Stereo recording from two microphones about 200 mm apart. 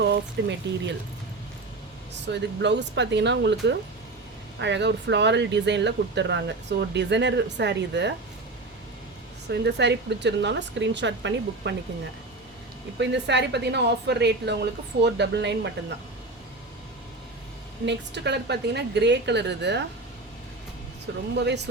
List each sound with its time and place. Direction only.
0.0 s speech: 60° right (ahead or behind)
2.2 s speech: 60° right (ahead or behind)
9.5 s speech: 60° right (ahead or behind)
13.0 s speech: 60° right (ahead or behind)
17.8 s speech: 60° right (ahead or behind)
21.3 s speech: 60° right (ahead or behind)